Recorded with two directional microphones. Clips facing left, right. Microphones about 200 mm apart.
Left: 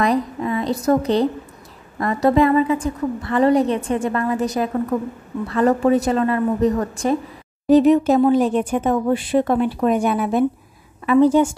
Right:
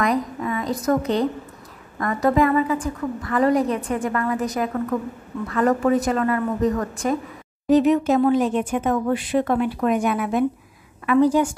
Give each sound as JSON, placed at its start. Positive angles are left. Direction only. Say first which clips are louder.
{"t": 0.0, "sound": "a sound", "louder": "left 3 dB", "side_deg": 30}
{"t": 0.8, "sound": "a woman's voice", "louder": "left 3 dB", "side_deg": 30}
{"t": 2.2, "sound": "a woman's voice", "louder": "left 3 dB", "side_deg": 30}
{"t": 5.5, "sound": "a woman's voice", "louder": "left 3 dB", "side_deg": 30}